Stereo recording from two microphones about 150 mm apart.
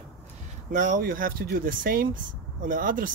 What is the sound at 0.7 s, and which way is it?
Speech, 60° right (ahead or behind).